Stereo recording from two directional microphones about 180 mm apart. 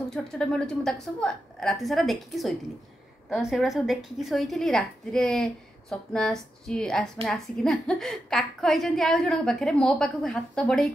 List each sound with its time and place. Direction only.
0.1 s a woman's voice: 5° left (ahead or behind)